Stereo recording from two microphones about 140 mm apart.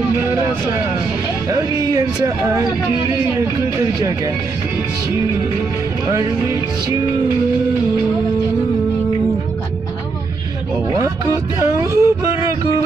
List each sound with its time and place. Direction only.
0.2 s speech: 15° right (ahead or behind)
1.5 s speech: 25° right (ahead or behind)
11.6 s a sound: 25° right (ahead or behind)